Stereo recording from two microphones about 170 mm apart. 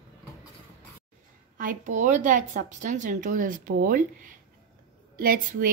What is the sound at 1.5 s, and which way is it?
A woman's voice, 50° right (ahead or behind).